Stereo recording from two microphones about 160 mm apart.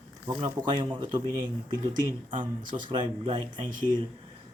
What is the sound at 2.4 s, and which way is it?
Speech, 30° right (ahead or behind).